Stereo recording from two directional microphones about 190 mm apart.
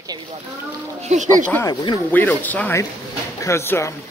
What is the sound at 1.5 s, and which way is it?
Speech, 15° left (ahead or behind).